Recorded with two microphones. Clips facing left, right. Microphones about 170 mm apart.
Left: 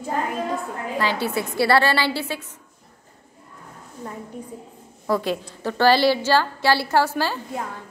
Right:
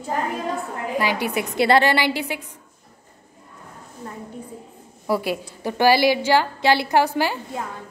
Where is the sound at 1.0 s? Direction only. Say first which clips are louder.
Right 1 dB; 15° right (ahead or behind).